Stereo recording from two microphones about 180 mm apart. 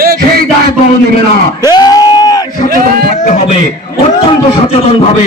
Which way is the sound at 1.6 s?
20° left (ahead or behind).